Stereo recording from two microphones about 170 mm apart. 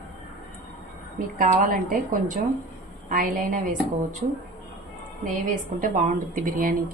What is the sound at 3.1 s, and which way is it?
Speech, 55° right (ahead or behind).